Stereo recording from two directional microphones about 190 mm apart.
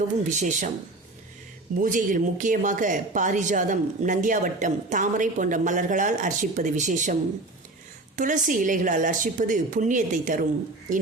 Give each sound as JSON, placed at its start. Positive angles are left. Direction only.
{"t": 0.3, "sound": "speech", "side_deg": -40}
{"t": 1.8, "sound": "a woman's voice", "side_deg": -45}